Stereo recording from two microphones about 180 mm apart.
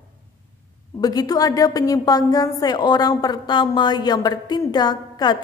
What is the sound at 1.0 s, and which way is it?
A man's voice, 20° left (ahead or behind).